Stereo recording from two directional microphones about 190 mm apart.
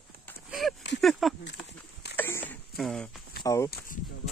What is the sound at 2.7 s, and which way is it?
Speech, centre (ahead or behind).